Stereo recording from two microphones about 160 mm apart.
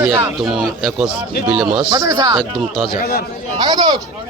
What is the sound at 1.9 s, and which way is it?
Speech, 20° right (ahead or behind).